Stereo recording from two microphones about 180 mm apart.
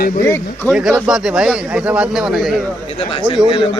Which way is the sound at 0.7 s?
5° right (ahead or behind).